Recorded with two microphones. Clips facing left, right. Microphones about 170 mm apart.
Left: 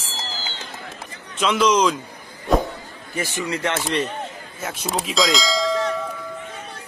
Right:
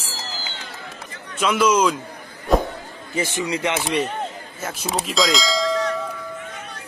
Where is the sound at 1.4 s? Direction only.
5° right (ahead or behind).